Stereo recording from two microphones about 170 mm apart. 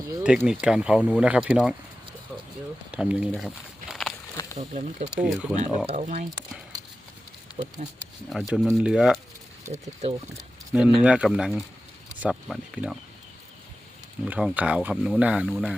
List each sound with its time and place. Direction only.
0.2 s speech: 5° right (ahead or behind)
2.9 s speech: 5° right (ahead or behind)
4.5 s speech: 45° right (ahead or behind)
5.2 s speech: 5° right (ahead or behind)
5.5 s speech: 40° right (ahead or behind)
7.5 s a sound: 25° left (ahead or behind)
8.3 s speech: centre (ahead or behind)
10.7 s speech: 5° right (ahead or behind)
14.3 s speech: 5° right (ahead or behind)